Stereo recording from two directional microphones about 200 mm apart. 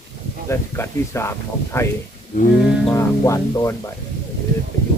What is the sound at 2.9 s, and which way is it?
Speech, 15° left (ahead or behind).